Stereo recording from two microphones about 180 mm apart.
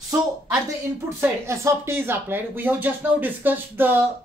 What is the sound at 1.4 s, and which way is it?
A woman's voice, 15° right (ahead or behind).